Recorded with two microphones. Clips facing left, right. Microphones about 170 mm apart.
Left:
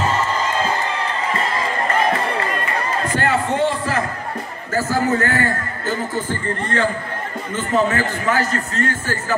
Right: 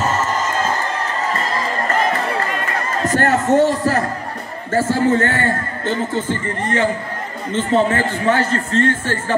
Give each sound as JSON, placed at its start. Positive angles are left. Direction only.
{"t": 3.1, "sound": "speech", "side_deg": -45}
{"t": 4.7, "sound": "a man's voice", "side_deg": -30}